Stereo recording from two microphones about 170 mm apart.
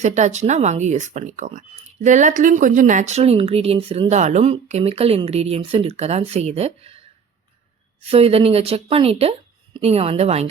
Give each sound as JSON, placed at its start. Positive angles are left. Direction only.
{"t": 0.0, "sound": "speech", "side_deg": -45}
{"t": 8.0, "sound": "speech", "side_deg": -35}